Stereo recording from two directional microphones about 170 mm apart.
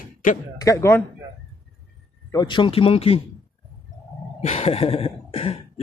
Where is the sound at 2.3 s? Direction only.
25° left (ahead or behind).